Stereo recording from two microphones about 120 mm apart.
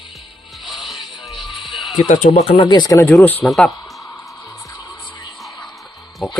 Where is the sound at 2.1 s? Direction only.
70° left (ahead or behind).